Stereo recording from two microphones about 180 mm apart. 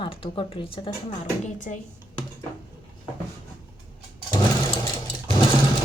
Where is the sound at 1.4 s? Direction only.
45° left (ahead or behind).